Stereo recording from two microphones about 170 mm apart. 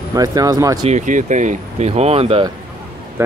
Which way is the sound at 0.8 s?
45° right (ahead or behind).